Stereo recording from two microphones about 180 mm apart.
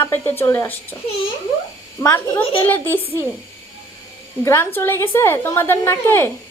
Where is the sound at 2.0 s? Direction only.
10° left (ahead or behind).